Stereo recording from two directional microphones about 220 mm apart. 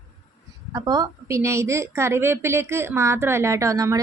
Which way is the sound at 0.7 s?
15° right (ahead or behind).